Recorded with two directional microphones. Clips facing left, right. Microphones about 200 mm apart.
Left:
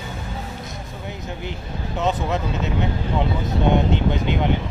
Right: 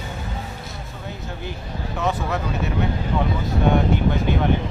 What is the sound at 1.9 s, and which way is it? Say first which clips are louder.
Speech: left 2 dB; 20° left (ahead or behind).